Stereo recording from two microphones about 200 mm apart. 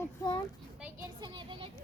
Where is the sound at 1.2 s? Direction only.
20° right (ahead or behind).